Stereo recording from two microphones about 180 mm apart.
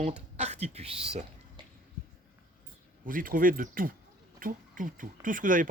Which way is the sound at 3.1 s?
50° right (ahead or behind).